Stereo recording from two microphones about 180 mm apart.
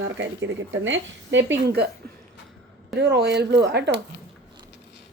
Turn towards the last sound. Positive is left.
turn(degrees=-70)  # may be behind; listen again after turning